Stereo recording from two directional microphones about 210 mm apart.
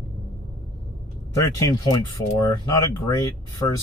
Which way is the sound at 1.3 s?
15° left (ahead or behind).